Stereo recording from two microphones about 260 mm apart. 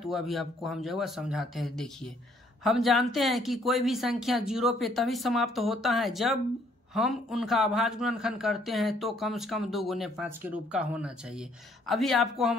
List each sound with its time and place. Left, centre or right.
0.0 s a man's voice: centre